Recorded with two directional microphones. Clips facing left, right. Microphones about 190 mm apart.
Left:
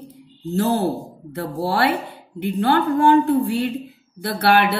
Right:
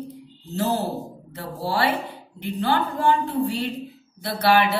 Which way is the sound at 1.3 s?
55° left (ahead or behind).